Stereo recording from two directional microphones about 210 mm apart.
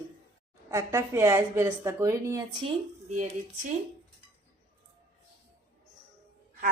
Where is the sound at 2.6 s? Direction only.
35° right (ahead or behind).